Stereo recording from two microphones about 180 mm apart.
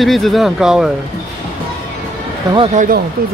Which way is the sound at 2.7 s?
45° right (ahead or behind).